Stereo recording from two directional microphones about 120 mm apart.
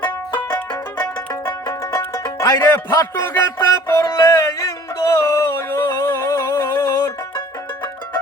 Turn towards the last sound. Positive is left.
turn(degrees=20)  # may be behind; listen again after turning